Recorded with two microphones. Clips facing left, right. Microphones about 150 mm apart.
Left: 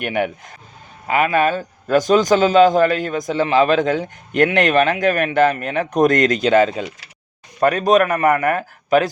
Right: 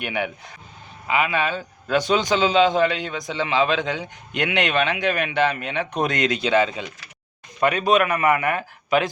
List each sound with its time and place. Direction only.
0.0 s a man's voice: 45° left (ahead or behind)